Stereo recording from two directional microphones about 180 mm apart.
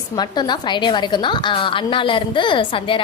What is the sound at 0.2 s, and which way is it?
A woman's voice, 25° left (ahead or behind).